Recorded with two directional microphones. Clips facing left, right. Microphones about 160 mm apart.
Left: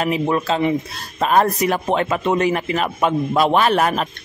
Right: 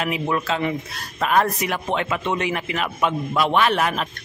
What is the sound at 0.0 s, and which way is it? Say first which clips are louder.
A man's voice: left 4 dB; 35° left (ahead or behind).